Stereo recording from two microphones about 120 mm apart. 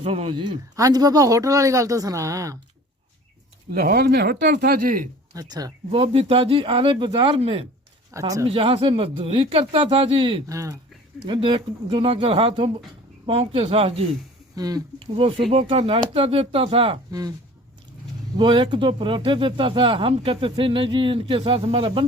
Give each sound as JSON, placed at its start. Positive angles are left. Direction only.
{"t": 0.0, "sound": "speech", "side_deg": -50}
{"t": 0.8, "sound": "speech", "side_deg": -30}
{"t": 5.3, "sound": "speech", "side_deg": -30}
{"t": 5.9, "sound": "speech", "side_deg": -50}
{"t": 8.1, "sound": "speech", "side_deg": -25}
{"t": 8.4, "sound": "speech", "side_deg": -50}
{"t": 10.5, "sound": "speech", "side_deg": -25}
{"t": 11.3, "sound": "speech", "side_deg": -45}
{"t": 14.5, "sound": "speech", "side_deg": -30}
{"t": 14.9, "sound": "speech", "side_deg": -50}
{"t": 17.1, "sound": "speech", "side_deg": -30}
{"t": 18.3, "sound": "speech", "side_deg": -40}